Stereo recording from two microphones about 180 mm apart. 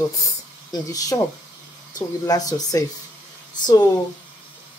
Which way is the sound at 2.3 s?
20° left (ahead or behind).